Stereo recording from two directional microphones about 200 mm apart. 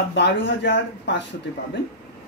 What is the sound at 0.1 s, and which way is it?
Speech, 65° left (ahead or behind).